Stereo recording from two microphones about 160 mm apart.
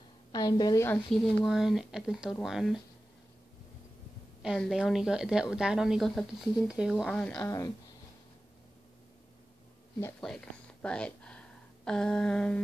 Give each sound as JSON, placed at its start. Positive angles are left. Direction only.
{"t": 0.3, "sound": "a woman's voice", "side_deg": 25}
{"t": 0.8, "sound": "a woman's voice", "side_deg": 5}
{"t": 4.4, "sound": "a woman's voice", "side_deg": 0}
{"t": 10.2, "sound": "speech", "side_deg": 5}